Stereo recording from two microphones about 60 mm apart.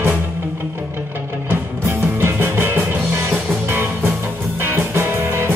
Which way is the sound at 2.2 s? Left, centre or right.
Right.